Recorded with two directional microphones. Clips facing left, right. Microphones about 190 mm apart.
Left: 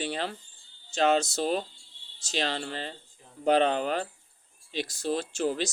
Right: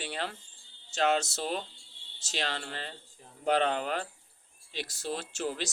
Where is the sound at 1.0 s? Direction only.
20° left (ahead or behind).